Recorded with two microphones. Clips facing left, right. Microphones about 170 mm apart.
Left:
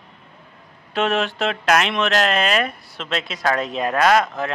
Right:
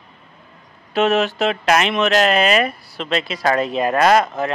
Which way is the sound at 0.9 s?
Centre (ahead or behind).